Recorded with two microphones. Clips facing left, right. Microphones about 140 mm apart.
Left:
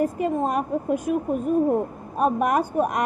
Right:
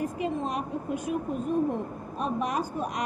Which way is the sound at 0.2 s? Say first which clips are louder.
Left 6 dB; 50° left (ahead or behind).